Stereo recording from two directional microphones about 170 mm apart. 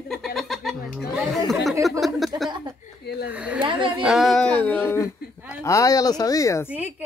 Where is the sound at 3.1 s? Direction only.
70° left (ahead or behind).